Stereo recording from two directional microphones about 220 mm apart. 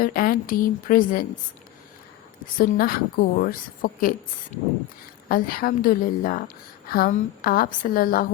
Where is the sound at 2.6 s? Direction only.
40° left (ahead or behind).